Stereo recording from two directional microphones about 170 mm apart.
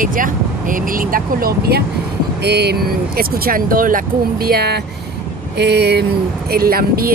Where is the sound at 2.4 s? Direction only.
80° right.